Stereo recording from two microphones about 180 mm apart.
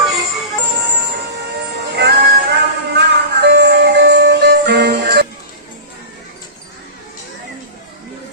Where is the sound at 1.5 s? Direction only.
65° right (ahead or behind).